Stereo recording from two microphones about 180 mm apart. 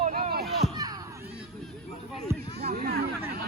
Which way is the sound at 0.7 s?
20° right (ahead or behind).